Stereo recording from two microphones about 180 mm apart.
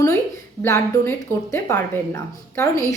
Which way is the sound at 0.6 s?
15° left (ahead or behind).